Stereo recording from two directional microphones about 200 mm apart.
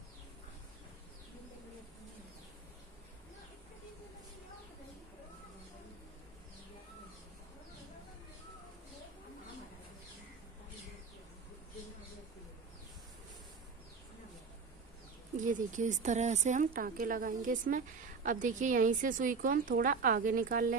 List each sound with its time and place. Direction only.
15.3 s a woman's voice: 40° right (ahead or behind)